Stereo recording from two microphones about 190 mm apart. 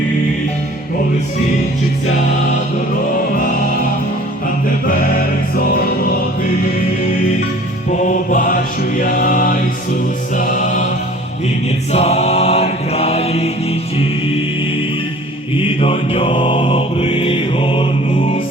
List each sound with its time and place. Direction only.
4.9 s music: 50° left (ahead or behind)
8.0 s mantra: 45° left (ahead or behind)
10.3 s music: 45° left (ahead or behind)
11.9 s music: 35° left (ahead or behind)
15.5 s mantra: 30° left (ahead or behind)